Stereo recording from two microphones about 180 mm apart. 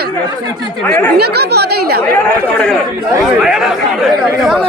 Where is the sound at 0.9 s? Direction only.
10° left (ahead or behind).